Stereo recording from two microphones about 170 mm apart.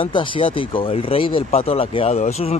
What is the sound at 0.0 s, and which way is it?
Speech, 30° left (ahead or behind).